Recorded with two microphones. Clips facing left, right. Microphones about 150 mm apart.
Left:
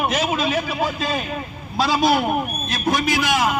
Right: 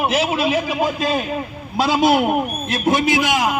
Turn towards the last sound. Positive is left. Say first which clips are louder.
# right 2 dB
turn(degrees=-20)  # may be behind; listen again after turning